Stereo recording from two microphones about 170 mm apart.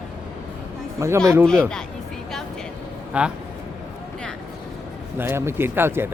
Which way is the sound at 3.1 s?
5° right (ahead or behind).